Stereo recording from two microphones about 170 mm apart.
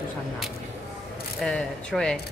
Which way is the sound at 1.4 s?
5° left (ahead or behind).